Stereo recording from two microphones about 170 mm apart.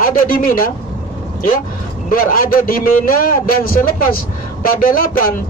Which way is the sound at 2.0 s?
55° left (ahead or behind).